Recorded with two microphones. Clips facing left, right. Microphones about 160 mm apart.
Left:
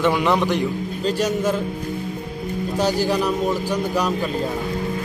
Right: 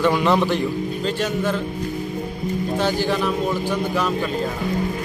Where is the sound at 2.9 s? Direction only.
40° left (ahead or behind).